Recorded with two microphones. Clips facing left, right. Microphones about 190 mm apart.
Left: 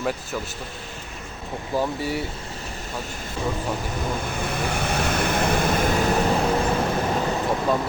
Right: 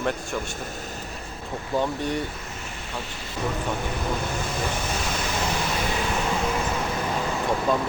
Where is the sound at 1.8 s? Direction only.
5° left (ahead or behind).